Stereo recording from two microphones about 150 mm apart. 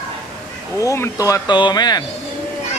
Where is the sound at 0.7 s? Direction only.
20° left (ahead or behind).